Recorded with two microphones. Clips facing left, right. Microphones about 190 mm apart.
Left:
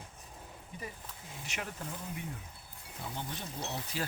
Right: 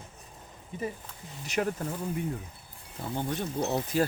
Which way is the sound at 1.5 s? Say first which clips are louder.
Right 13 dB; 45° right (ahead or behind).